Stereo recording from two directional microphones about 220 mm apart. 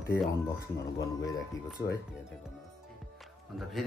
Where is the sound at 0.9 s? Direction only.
15° left (ahead or behind).